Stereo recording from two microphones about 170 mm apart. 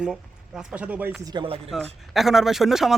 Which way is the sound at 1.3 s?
30° right (ahead or behind).